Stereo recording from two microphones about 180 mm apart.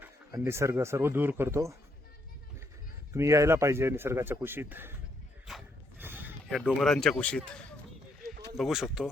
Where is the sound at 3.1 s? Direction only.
15° right (ahead or behind).